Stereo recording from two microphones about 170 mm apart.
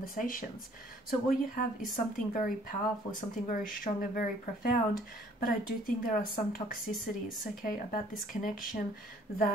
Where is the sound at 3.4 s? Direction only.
55° left (ahead or behind).